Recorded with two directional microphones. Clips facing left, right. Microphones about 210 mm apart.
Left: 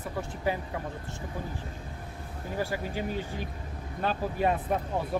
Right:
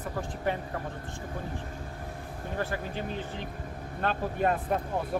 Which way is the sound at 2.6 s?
10° left (ahead or behind).